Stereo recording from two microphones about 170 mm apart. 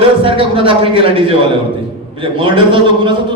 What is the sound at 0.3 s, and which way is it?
Speech, 30° right (ahead or behind).